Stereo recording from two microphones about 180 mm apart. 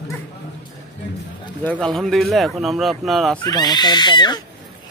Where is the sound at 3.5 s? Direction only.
20° left (ahead or behind).